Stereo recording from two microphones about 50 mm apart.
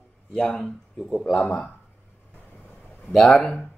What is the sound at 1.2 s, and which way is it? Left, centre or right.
Speech, centre.